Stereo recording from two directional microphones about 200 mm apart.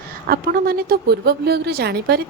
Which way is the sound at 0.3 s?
50° right (ahead or behind).